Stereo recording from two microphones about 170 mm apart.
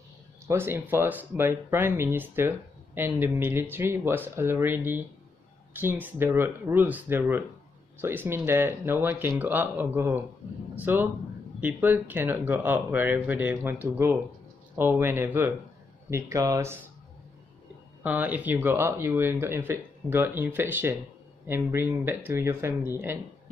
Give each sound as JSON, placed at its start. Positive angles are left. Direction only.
{"t": 0.5, "sound": "speech", "side_deg": -15}
{"t": 18.0, "sound": "speech", "side_deg": -10}